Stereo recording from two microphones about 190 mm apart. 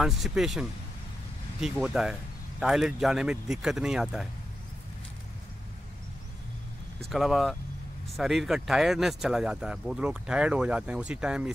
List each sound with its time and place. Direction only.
0.0 s speech: 5° right (ahead or behind)
7.1 s speech: centre (ahead or behind)